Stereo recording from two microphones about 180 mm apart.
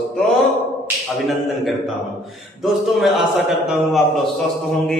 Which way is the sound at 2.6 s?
Centre (ahead or behind).